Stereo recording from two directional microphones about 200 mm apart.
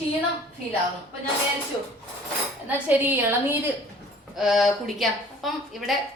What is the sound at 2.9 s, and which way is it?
A woman's voice, 10° right (ahead or behind).